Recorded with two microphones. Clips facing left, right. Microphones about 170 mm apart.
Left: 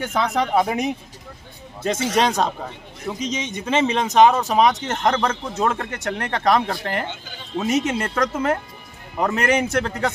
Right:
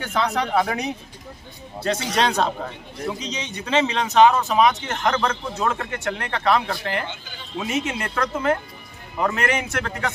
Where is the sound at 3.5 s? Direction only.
15° left (ahead or behind).